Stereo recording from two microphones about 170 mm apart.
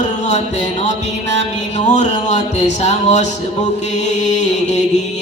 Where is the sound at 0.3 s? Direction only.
45° left (ahead or behind).